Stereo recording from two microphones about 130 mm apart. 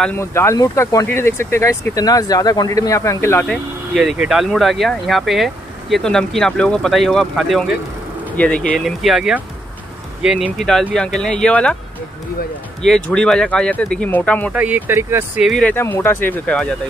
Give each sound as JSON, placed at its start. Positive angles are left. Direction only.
{"t": 0.2, "sound": "speech", "side_deg": 20}
{"t": 3.4, "sound": "speech", "side_deg": 0}
{"t": 8.4, "sound": "speech", "side_deg": 10}
{"t": 12.8, "sound": "speech", "side_deg": 5}
{"t": 14.5, "sound": "speech", "side_deg": -10}
{"t": 15.6, "sound": "speech", "side_deg": 15}